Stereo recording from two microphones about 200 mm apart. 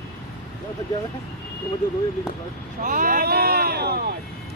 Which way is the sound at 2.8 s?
45° right (ahead or behind).